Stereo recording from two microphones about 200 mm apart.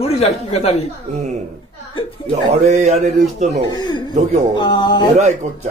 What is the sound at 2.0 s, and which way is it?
Speech, 25° left (ahead or behind).